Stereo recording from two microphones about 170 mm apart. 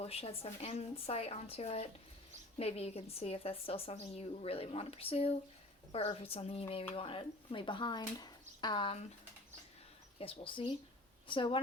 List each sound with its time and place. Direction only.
0.0 s a woman's voice: 35° left (ahead or behind)
10.2 s a woman's voice: 30° left (ahead or behind)